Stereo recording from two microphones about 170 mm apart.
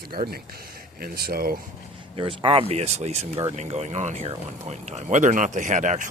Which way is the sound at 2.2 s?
30° right (ahead or behind).